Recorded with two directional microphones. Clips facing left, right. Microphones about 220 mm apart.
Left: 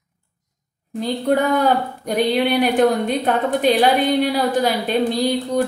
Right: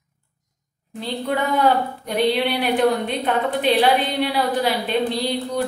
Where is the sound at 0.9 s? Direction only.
45° left (ahead or behind).